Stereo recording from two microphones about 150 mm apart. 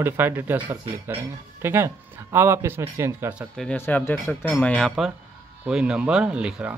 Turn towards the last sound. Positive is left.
turn(degrees=-5)  # may be behind; listen again after turning